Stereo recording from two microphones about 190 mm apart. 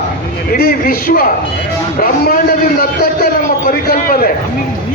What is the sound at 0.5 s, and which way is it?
A man's voice, 50° left (ahead or behind).